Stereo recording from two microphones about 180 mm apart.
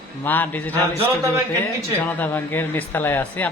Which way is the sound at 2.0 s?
10° left (ahead or behind).